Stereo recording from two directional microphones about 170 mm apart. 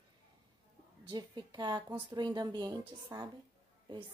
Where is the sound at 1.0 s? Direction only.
25° right (ahead or behind).